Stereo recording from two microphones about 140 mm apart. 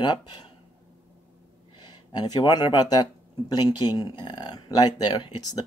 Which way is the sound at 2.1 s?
30° left (ahead or behind).